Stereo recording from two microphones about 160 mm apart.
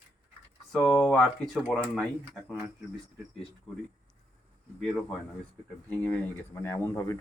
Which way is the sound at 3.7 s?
35° left (ahead or behind).